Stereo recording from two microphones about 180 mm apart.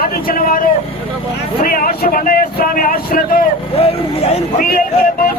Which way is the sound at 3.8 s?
35° left (ahead or behind).